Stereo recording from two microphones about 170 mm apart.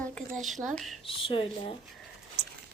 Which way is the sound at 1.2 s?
35° left (ahead or behind).